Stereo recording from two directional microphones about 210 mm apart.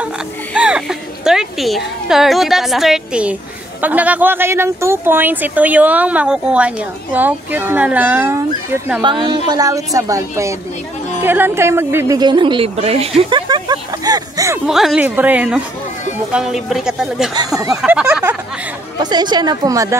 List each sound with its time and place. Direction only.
0.6 s a woman's voice: 5° right (ahead or behind)
9.0 s speech: 20° right (ahead or behind)
14.7 s speech: centre (ahead or behind)
17.6 s speech: 15° right (ahead or behind)
18.9 s speech: 20° right (ahead or behind)